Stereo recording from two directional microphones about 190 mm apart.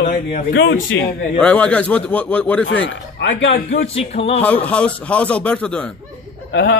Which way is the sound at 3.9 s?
30° left (ahead or behind).